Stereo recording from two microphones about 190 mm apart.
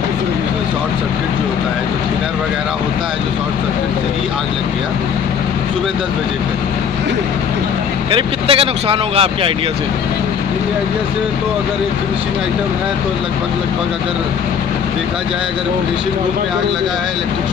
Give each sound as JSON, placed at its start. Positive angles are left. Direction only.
{"t": 8.1, "sound": "speech", "side_deg": -30}